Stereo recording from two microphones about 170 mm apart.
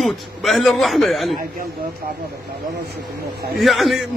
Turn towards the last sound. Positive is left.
turn(degrees=0)  # may be behind; listen again after turning